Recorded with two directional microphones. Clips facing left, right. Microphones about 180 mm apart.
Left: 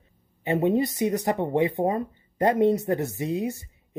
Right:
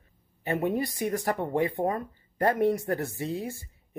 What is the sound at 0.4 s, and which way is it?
Speech, 20° left (ahead or behind).